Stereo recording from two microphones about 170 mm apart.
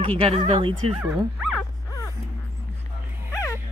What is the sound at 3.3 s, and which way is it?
Dog, 15° left (ahead or behind).